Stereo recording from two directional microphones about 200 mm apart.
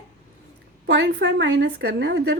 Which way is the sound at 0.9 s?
65° right (ahead or behind).